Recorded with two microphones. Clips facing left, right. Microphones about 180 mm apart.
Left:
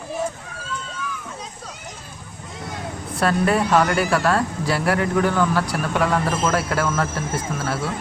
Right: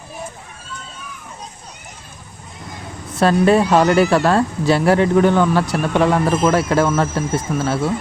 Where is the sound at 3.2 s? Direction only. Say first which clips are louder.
Right 6 dB; 25° right (ahead or behind).